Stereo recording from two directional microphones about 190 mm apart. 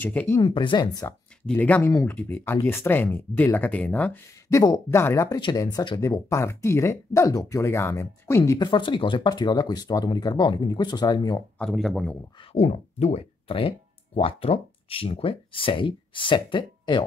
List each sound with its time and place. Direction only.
0.0 s speech: 10° left (ahead or behind)
0.4 s speech: 25° left (ahead or behind)
1.4 s speech: 5° left (ahead or behind)
11.5 s speech: 5° left (ahead or behind)
12.5 s speech: 35° left (ahead or behind)